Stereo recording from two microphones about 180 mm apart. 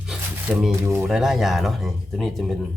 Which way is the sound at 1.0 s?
Centre (ahead or behind).